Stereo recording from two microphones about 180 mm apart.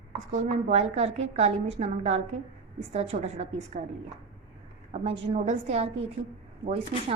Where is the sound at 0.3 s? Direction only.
40° right (ahead or behind).